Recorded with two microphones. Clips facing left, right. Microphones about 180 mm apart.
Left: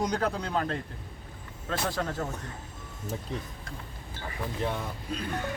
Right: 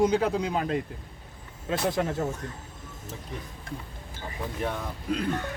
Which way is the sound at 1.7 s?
20° right (ahead or behind).